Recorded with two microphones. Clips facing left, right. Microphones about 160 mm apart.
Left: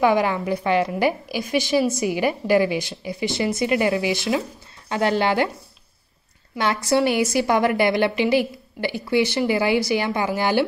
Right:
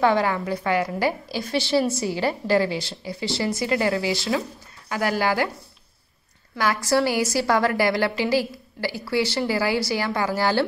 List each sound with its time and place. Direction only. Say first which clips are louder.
0.0 s a woman's voice: left 2 dB; 15° left (ahead or behind)
6.5 s a woman's voice: left 1 dB; 20° left (ahead or behind)